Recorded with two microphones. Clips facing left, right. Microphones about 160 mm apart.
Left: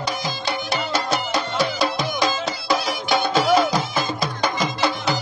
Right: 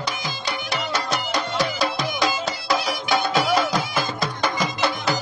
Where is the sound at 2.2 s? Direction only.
Centre (ahead or behind).